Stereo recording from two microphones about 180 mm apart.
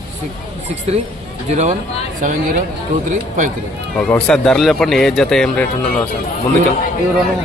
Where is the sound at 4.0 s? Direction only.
10° left (ahead or behind).